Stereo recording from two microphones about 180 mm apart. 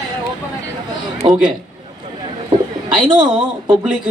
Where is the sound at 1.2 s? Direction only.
30° right (ahead or behind).